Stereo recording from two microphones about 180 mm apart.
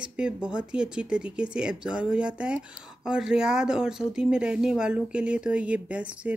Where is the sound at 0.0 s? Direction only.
5° right (ahead or behind).